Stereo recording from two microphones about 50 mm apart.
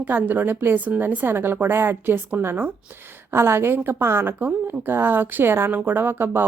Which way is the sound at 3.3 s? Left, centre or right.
Right.